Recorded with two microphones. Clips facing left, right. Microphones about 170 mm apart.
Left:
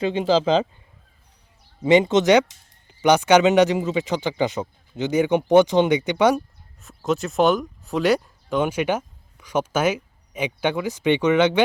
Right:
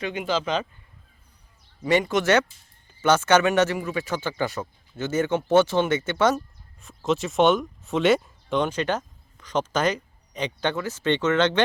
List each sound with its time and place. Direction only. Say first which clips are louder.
0.0 s speech: left 7 dB; 30° left (ahead or behind)
1.8 s speech: left 6 dB; 20° left (ahead or behind)
6.8 s speech: left 1 dB; centre (ahead or behind)